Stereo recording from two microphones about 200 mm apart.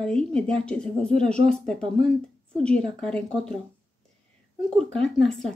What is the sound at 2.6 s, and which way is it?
Speech, 5° left (ahead or behind).